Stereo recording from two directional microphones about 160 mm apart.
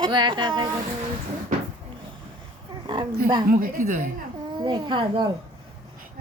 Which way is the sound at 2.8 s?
30° right (ahead or behind).